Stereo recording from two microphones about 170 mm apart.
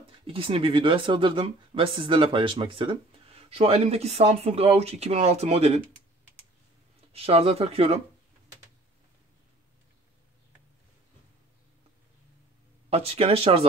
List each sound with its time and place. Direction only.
0.0 s speech: 30° right (ahead or behind)
7.1 s speech: 35° right (ahead or behind)
12.9 s speech: 35° right (ahead or behind)